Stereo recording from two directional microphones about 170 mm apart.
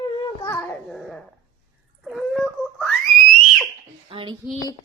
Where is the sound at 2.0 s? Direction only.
Centre (ahead or behind).